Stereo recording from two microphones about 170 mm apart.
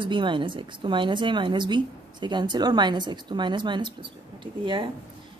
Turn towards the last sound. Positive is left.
turn(degrees=-30)  # may be behind; listen again after turning